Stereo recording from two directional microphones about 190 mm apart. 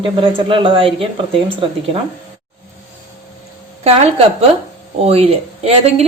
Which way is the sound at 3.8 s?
35° right (ahead or behind).